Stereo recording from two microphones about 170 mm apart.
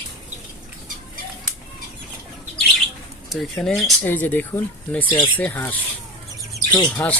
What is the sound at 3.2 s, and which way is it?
Speech, 5° left (ahead or behind).